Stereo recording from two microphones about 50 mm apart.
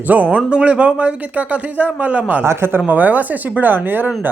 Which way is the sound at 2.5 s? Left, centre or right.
Right.